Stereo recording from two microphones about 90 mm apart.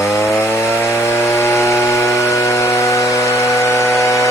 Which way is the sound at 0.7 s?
25° left (ahead or behind).